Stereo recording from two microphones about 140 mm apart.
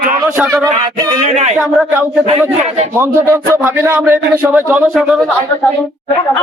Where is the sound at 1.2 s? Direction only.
55° right (ahead or behind).